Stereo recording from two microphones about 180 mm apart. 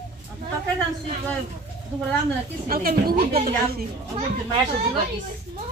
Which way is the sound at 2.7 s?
55° right (ahead or behind).